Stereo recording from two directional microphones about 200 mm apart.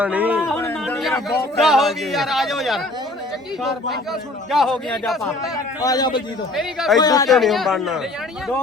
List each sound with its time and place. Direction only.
0.0 s speech: 5° right (ahead or behind)
0.5 s a sound: 5° left (ahead or behind)
1.6 s a man's voice: centre (ahead or behind)
4.5 s a man's voice: centre (ahead or behind)
5.8 s a man's voice: 20° left (ahead or behind)
6.6 s a man's voice: centre (ahead or behind)
7.0 s a man's voice: 20° left (ahead or behind)
7.3 s a man's voice: centre (ahead or behind)